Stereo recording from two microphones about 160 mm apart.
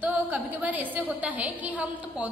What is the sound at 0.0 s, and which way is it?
A woman's voice, 10° right (ahead or behind).